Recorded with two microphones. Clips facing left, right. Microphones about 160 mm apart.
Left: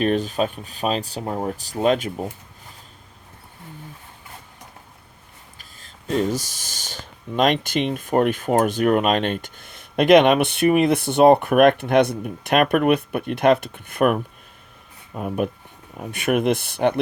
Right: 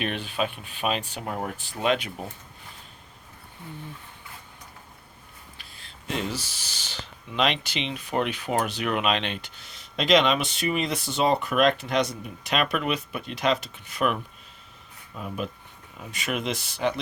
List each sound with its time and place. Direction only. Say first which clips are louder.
0.0 s speech: left 8 dB; 40° left (ahead or behind)
5.5 s speech: left 1 dB; 45° left (ahead or behind)